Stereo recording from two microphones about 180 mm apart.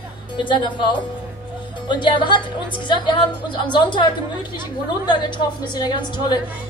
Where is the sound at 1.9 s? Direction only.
25° left (ahead or behind).